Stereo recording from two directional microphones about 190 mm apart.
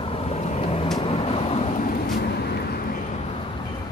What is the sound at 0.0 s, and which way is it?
Vehicle, 30° left (ahead or behind).